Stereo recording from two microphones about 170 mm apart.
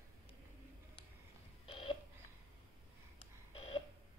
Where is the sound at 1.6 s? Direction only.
30° left (ahead or behind).